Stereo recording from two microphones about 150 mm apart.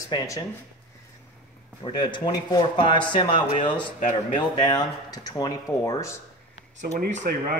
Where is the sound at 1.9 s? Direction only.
30° left (ahead or behind).